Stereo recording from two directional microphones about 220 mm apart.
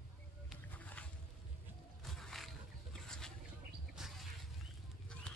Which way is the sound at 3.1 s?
5° left (ahead or behind).